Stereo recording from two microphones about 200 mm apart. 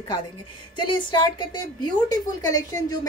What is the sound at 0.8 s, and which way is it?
Speech, 25° left (ahead or behind).